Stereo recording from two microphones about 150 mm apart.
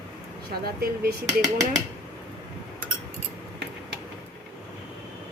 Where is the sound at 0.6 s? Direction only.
90° right.